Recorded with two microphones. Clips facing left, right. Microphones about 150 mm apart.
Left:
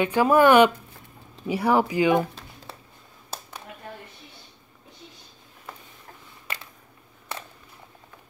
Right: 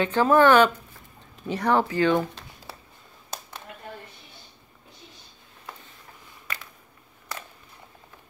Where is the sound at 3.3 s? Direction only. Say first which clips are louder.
Even; 5° left (ahead or behind).